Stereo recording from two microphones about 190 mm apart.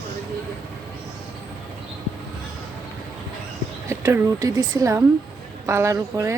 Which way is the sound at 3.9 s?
15° right (ahead or behind).